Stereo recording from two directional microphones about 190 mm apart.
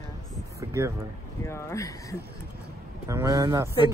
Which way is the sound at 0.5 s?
15° right (ahead or behind).